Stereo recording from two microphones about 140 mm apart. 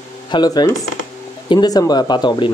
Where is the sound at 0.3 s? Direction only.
30° left (ahead or behind).